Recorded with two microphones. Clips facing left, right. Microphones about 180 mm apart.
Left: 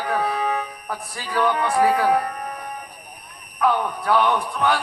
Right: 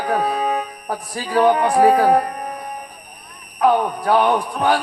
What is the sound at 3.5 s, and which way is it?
A man's voice, 35° right (ahead or behind).